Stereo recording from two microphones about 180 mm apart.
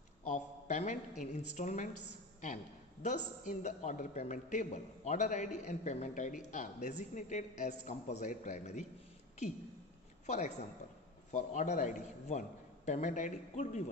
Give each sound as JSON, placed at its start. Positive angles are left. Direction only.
{"t": 0.2, "sound": "a sound", "side_deg": 40}
{"t": 1.2, "sound": "a man's voice", "side_deg": 40}
{"t": 10.2, "sound": "a woman's voice", "side_deg": 40}